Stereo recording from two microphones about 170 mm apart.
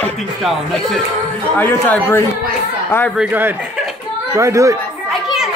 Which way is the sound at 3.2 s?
10° right (ahead or behind).